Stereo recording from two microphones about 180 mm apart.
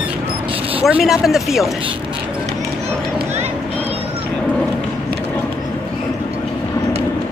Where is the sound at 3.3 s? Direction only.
35° right (ahead or behind).